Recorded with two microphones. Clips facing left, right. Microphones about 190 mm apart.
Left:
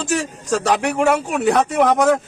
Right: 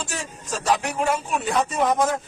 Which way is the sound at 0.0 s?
75° left (ahead or behind).